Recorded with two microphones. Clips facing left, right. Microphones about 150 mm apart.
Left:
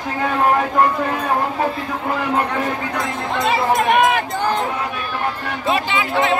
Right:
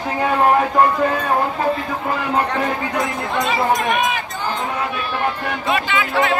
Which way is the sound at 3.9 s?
70° left (ahead or behind).